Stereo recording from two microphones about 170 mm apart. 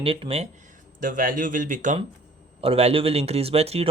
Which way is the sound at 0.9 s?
50° right (ahead or behind).